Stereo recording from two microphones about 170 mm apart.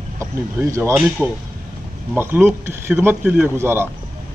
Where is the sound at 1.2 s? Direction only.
5° right (ahead or behind).